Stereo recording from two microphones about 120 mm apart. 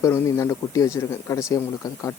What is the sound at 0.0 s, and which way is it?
A man's voice, 25° left (ahead or behind).